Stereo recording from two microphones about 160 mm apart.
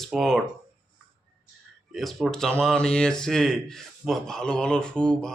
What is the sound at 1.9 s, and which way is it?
Speech, centre (ahead or behind).